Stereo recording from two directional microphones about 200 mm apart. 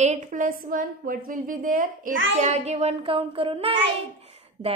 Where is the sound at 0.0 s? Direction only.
40° right (ahead or behind).